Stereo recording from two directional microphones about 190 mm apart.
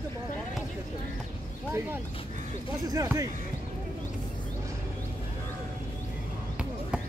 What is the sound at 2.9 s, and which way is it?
Speech, 15° right (ahead or behind).